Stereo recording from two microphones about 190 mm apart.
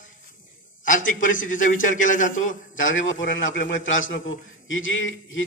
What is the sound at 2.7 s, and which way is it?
A man's voice, 85° left.